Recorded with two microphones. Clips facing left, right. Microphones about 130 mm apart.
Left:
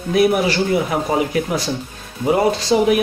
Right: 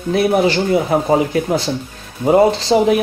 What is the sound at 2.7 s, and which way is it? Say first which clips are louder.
Speech: even; 35° right (ahead or behind).